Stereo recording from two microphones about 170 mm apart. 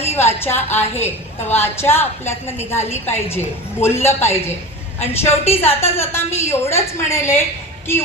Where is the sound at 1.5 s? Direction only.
15° left (ahead or behind).